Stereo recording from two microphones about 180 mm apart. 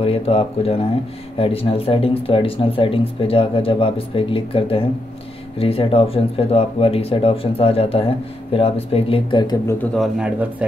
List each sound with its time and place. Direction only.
0.0 s speech: 35° left (ahead or behind)
9.9 s speech: 5° right (ahead or behind)